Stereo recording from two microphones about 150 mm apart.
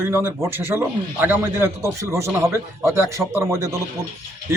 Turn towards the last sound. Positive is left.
turn(degrees=-15)  # may be behind; listen again after turning